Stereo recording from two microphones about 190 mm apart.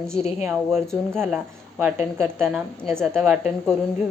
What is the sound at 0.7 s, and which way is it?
Speech, 5° left (ahead or behind).